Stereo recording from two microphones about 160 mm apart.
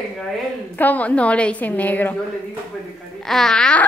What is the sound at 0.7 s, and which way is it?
A woman's voice, 10° left (ahead or behind).